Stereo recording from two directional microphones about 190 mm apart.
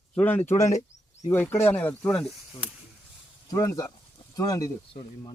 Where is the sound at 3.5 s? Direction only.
15° left (ahead or behind).